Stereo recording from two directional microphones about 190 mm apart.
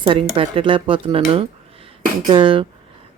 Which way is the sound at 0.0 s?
30° right (ahead or behind).